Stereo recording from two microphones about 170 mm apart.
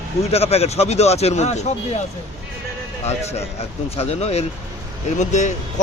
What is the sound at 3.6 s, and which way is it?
Speech, 35° left (ahead or behind).